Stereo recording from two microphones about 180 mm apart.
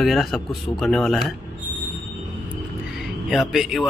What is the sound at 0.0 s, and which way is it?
A man's voice, centre (ahead or behind).